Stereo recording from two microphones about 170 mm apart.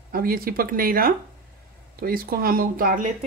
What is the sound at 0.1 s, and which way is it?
A woman's voice, 60° right (ahead or behind).